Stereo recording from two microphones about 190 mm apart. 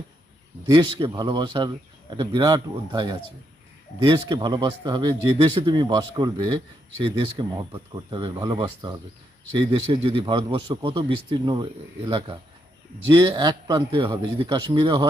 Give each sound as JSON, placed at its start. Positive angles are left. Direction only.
{"t": 0.7, "sound": "a man's voice", "side_deg": -25}